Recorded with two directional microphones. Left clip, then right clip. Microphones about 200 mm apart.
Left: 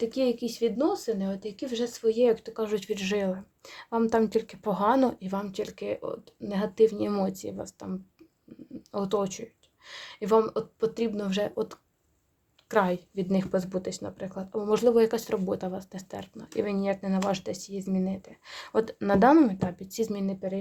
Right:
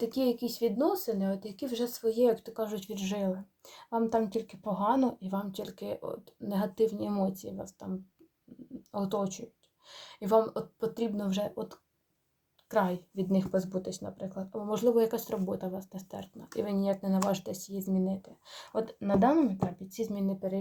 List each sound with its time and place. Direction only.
0.0 s speech: 25° left (ahead or behind)
8.9 s speech: 30° left (ahead or behind)
17.5 s speech: 65° left (ahead or behind)
17.8 s speech: 30° left (ahead or behind); by 19.5 s 45° left (ahead or behind)
20.0 s speech: 35° left (ahead or behind)